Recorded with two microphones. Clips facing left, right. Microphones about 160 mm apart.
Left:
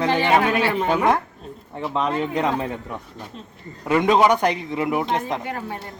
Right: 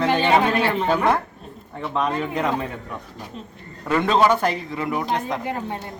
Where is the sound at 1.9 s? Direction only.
25° left (ahead or behind).